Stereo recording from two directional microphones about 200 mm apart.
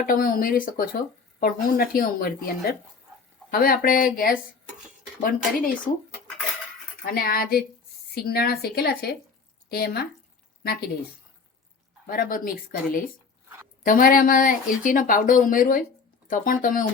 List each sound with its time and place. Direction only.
0.0 s speech: 45° left (ahead or behind)
7.0 s speech: 45° left (ahead or behind)
12.0 s speech: 45° left (ahead or behind)